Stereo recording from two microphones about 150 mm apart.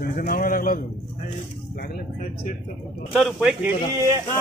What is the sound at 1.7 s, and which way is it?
Speech, 90° left.